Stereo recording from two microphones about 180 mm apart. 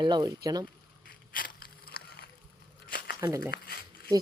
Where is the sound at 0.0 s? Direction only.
25° right (ahead or behind).